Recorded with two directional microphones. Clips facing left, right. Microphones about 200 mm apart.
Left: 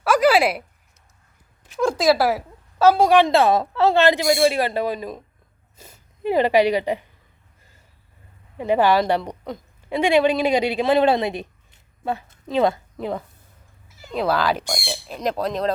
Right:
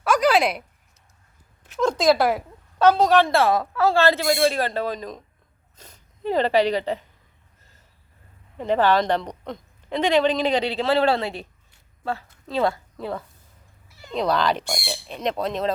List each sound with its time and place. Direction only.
0.0 s a sound: 5° left (ahead or behind)
1.8 s a woman's voice: 5° left (ahead or behind)
8.5 s a woman's voice: 10° left (ahead or behind)
13.9 s speech: 5° left (ahead or behind)